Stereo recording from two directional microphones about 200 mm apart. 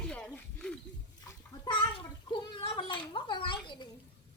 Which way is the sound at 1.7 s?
25° left (ahead or behind).